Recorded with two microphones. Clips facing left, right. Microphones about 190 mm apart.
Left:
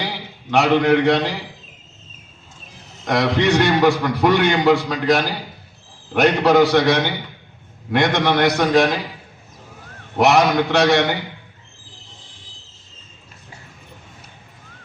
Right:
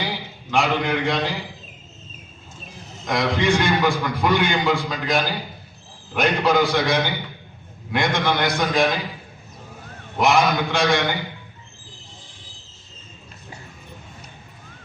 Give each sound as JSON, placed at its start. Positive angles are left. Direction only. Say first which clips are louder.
{"t": 0.5, "sound": "a man's voice", "louder": "left 6 dB", "side_deg": 70}
{"t": 3.0, "sound": "a man's voice", "louder": "left 4 dB", "side_deg": 70}
{"t": 10.2, "sound": "a man's voice", "louder": "left 4 dB", "side_deg": 70}